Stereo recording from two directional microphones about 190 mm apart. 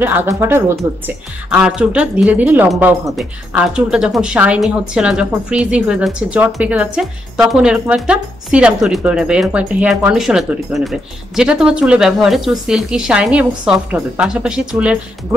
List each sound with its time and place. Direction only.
0.0 s a woman's voice: 10° right (ahead or behind)